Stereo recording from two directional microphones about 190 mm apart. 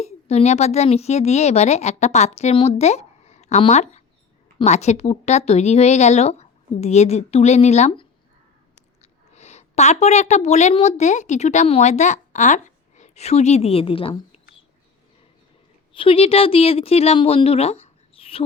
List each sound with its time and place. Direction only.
0.0 s a woman's voice: 35° left (ahead or behind)
9.3 s a woman's voice: 35° left (ahead or behind)
15.9 s speech: 30° left (ahead or behind)